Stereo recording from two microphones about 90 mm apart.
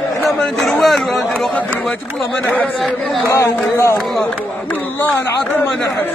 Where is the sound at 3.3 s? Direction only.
30° left (ahead or behind).